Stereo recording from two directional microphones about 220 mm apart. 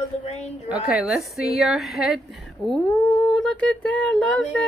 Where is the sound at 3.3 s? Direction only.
5° left (ahead or behind).